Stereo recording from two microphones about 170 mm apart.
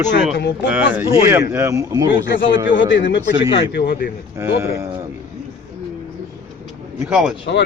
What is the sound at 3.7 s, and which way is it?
Speech, 70° left (ahead or behind).